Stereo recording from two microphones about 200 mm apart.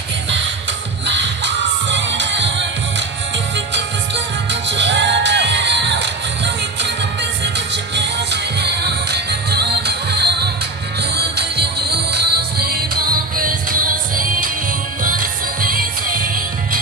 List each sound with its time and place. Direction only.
1.0 s music: 65° right (ahead or behind)
3.5 s music: 60° right (ahead or behind); by 15.8 s 45° right (ahead or behind)